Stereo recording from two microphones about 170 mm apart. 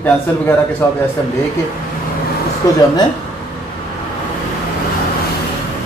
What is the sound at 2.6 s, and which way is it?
Speech, 20° left (ahead or behind).